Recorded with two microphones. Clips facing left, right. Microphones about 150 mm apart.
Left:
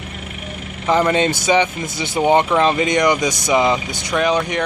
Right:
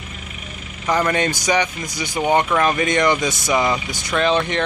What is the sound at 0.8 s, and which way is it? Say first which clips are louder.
Speech: left 3 dB; 20° left (ahead or behind).